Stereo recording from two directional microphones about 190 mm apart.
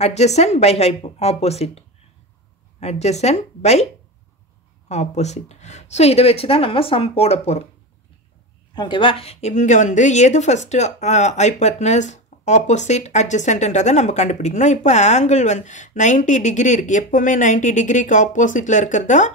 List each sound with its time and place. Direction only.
0.0 s a woman's voice: 35° left (ahead or behind)
4.8 s a woman's voice: 35° left (ahead or behind)
8.7 s a woman's voice: 25° left (ahead or behind); by 19.3 s 40° left (ahead or behind)